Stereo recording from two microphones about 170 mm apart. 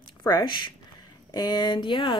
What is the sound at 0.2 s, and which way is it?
A woman's voice, 20° left (ahead or behind).